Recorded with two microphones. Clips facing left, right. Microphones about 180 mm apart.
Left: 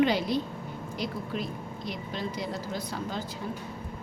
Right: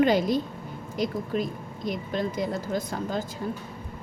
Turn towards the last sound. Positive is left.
turn(degrees=-50)  # may be behind; listen again after turning